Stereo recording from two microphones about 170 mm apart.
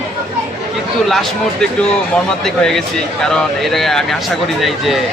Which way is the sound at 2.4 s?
Centre (ahead or behind).